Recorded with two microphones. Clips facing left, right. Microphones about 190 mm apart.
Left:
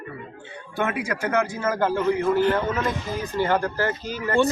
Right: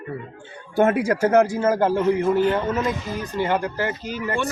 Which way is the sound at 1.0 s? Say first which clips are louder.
Right 8 dB; 45° right (ahead or behind).